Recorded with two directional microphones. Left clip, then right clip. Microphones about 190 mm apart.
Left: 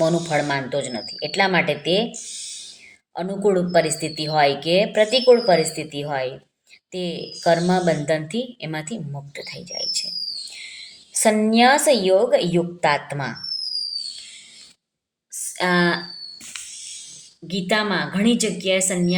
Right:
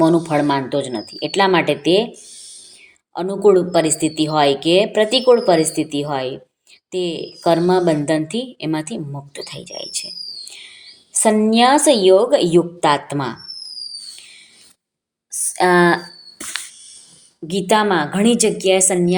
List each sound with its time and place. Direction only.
0.0 s a woman's voice: 25° right (ahead or behind)
3.2 s a woman's voice: 20° right (ahead or behind)
15.3 s a sound: 25° right (ahead or behind)
17.5 s a woman's voice: 30° right (ahead or behind)